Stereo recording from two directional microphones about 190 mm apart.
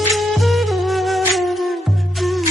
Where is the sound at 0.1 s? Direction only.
Centre (ahead or behind).